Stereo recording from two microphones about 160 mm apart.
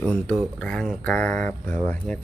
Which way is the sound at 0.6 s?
5° left (ahead or behind).